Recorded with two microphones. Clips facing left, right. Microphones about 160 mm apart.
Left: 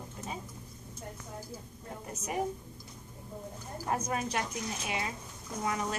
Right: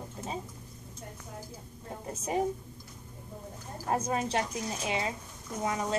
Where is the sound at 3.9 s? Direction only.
30° right (ahead or behind).